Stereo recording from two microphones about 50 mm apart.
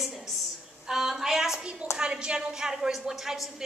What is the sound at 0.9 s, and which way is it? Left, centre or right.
Speech, centre.